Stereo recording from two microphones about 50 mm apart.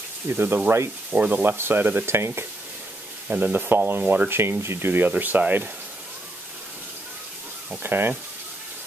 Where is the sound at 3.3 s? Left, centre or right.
Right.